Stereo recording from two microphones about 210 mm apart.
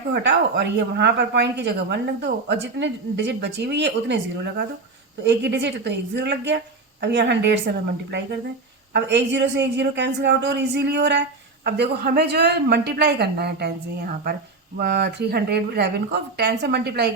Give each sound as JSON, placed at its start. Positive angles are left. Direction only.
{"t": 0.1, "sound": "speech", "side_deg": -55}
{"t": 8.9, "sound": "a woman's voice", "side_deg": -55}